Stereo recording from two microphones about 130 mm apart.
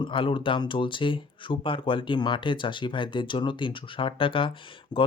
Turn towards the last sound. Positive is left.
turn(degrees=30)  # may be behind; listen again after turning